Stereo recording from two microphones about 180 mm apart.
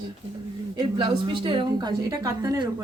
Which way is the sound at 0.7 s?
25° right (ahead or behind).